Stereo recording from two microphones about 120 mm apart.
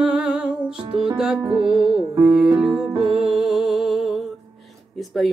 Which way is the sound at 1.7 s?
5° right (ahead or behind).